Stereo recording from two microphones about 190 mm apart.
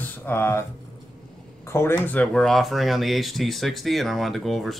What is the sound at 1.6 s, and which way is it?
Speech, 15° left (ahead or behind).